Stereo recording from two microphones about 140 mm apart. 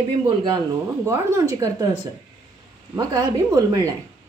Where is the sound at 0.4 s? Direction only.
30° right (ahead or behind).